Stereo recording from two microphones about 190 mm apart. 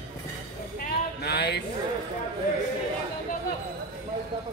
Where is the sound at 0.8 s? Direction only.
60° left (ahead or behind).